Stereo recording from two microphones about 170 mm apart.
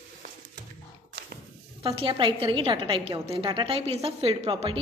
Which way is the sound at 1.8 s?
30° right (ahead or behind).